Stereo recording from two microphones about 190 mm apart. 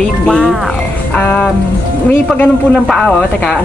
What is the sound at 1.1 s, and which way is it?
Music, 10° left (ahead or behind).